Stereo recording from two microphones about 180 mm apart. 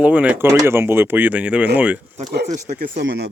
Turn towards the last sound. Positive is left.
turn(degrees=-65)  # may be behind; listen again after turning